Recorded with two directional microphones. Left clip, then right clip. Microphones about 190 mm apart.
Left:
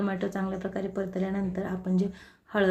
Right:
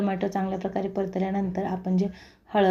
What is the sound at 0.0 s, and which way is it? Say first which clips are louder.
A woman's voice: right 4 dB; 10° right (ahead or behind).